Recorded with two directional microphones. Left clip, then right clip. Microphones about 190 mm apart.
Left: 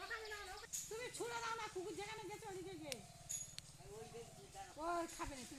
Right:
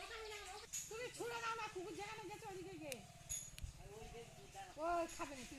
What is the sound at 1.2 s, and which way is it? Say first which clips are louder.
Speech: even; 20° right (ahead or behind).